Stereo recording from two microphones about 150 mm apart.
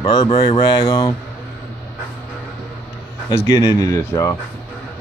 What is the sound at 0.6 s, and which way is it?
Speech, 20° left (ahead or behind).